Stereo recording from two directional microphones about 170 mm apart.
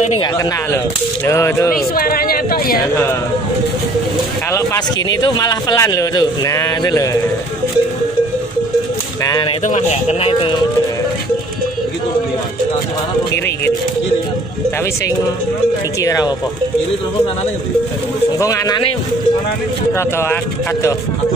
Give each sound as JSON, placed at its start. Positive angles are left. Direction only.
{"t": 0.2, "sound": "speech", "side_deg": 20}
{"t": 2.0, "sound": "speech", "side_deg": 60}
{"t": 4.5, "sound": "speech", "side_deg": 20}
{"t": 9.2, "sound": "speech", "side_deg": 20}
{"t": 9.7, "sound": "speech", "side_deg": 40}
{"t": 16.0, "sound": "speech", "side_deg": 20}
{"t": 18.4, "sound": "speech", "side_deg": 20}
{"t": 19.9, "sound": "speech", "side_deg": 15}